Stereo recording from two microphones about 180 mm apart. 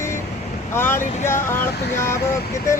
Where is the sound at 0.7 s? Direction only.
10° left (ahead or behind).